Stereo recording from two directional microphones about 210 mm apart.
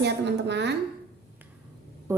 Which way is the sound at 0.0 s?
55° right (ahead or behind).